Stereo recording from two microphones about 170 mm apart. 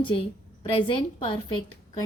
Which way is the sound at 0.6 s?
30° left (ahead or behind).